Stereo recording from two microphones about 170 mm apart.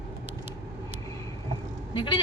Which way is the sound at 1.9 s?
30° left (ahead or behind).